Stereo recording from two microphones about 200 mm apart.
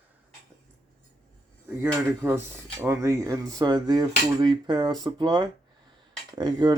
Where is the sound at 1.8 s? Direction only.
10° right (ahead or behind).